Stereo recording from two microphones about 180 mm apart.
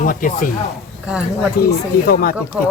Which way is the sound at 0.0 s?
50° left (ahead or behind).